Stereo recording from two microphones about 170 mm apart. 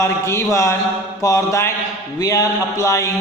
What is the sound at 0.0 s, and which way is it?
A man's voice, 15° left (ahead or behind).